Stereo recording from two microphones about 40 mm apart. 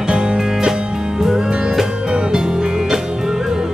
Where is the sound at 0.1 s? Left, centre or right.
Right.